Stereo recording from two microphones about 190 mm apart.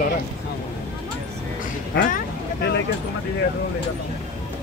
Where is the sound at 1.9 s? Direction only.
60° left (ahead or behind).